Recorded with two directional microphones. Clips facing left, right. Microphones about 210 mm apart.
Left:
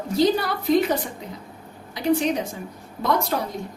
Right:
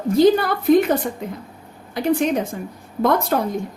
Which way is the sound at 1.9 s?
55° right (ahead or behind).